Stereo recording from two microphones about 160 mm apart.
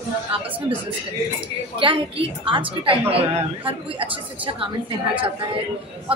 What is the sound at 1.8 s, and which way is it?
A woman's voice, 30° right (ahead or behind).